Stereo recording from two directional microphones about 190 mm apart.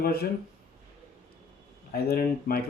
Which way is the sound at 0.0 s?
55° left (ahead or behind).